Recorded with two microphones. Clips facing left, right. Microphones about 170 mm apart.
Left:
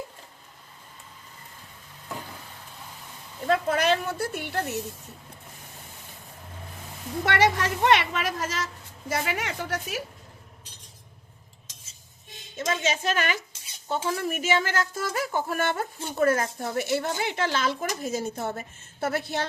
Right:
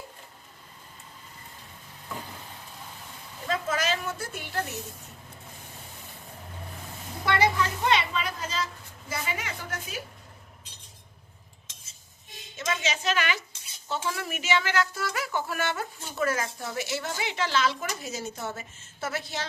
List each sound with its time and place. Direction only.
3.4 s speech: 60° left (ahead or behind)
7.3 s a woman's voice: 75° left (ahead or behind)
12.7 s speech: 45° left (ahead or behind)